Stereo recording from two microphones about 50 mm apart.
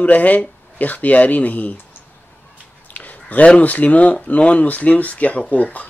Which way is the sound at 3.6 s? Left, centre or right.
Left.